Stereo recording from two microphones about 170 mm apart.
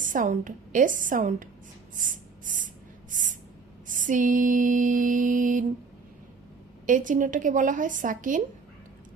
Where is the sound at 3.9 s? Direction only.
50° right (ahead or behind).